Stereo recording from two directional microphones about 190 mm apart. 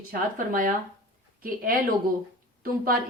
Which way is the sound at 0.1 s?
45° right (ahead or behind).